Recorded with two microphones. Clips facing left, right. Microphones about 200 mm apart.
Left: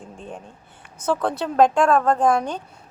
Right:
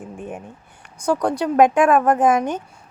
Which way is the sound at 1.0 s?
15° right (ahead or behind).